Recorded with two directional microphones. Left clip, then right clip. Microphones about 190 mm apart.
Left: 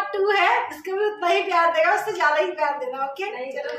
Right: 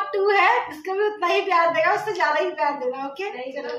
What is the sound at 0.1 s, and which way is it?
A woman's voice, 15° right (ahead or behind).